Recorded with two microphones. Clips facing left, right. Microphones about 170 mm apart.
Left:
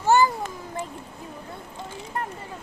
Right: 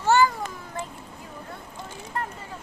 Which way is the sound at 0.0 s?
15° left (ahead or behind).